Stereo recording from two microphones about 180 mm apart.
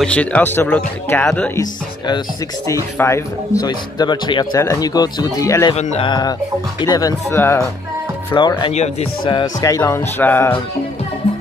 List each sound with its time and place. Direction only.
0.0 s speech: 5° left (ahead or behind)
1.6 s speech: 20° left (ahead or behind)
5.8 s speech: 35° left (ahead or behind); by 7.6 s 15° left (ahead or behind)
8.4 s speech: 25° left (ahead or behind)
8.7 s speech: 35° left (ahead or behind)
9.4 s speech: 20° left (ahead or behind)